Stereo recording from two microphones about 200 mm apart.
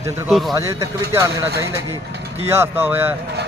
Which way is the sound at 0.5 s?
15° right (ahead or behind).